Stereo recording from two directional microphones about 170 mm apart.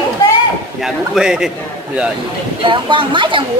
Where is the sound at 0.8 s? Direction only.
5° right (ahead or behind).